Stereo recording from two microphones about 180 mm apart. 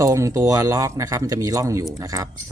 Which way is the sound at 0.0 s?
20° right (ahead or behind).